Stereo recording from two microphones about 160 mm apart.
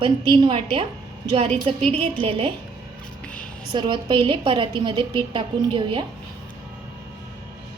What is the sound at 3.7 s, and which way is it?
A woman's voice, 30° right (ahead or behind).